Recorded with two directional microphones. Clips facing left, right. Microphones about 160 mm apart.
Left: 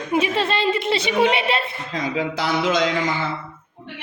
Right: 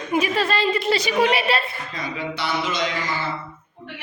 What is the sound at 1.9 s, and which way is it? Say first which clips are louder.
Speech: left 6 dB; 90° left.